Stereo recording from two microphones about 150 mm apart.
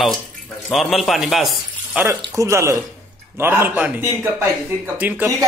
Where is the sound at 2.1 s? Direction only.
20° right (ahead or behind).